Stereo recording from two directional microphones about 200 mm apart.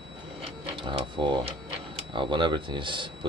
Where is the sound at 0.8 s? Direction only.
25° right (ahead or behind).